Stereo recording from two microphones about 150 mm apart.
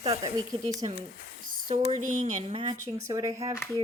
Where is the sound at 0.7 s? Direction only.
45° right (ahead or behind).